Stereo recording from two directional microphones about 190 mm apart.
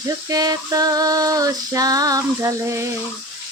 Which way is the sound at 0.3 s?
20° right (ahead or behind).